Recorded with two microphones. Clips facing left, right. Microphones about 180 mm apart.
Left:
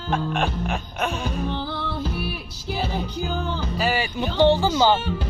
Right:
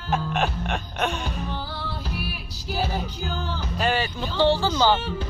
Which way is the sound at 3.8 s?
10° left (ahead or behind).